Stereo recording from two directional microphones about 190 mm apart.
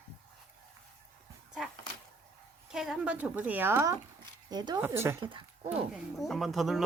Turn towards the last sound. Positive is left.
turn(degrees=0)  # may be behind; listen again after turning